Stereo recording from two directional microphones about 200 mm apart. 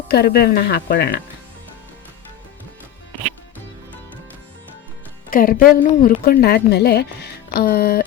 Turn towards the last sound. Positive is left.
turn(degrees=50)  # may be behind; listen again after turning